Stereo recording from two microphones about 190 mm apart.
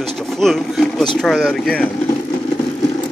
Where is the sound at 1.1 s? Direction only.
Centre (ahead or behind).